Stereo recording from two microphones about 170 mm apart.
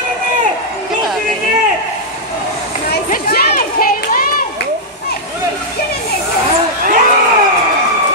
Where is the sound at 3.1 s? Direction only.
60° left (ahead or behind).